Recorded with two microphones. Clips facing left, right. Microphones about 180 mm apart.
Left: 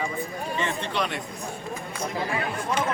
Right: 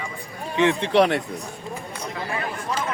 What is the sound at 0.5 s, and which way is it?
Speech, 70° right (ahead or behind).